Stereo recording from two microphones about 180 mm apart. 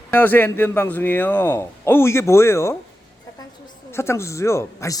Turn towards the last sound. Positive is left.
turn(degrees=15)  # may be behind; listen again after turning